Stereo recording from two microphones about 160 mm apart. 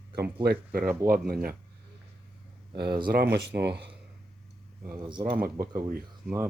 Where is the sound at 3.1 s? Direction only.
80° right.